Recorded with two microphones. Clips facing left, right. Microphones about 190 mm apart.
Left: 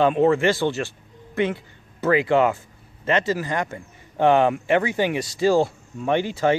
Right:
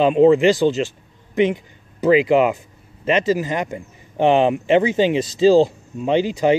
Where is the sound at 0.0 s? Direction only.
15° right (ahead or behind).